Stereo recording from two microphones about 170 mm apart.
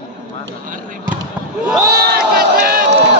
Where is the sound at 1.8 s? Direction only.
65° right (ahead or behind).